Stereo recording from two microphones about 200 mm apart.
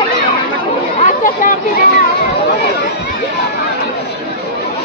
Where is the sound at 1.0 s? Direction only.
40° left (ahead or behind).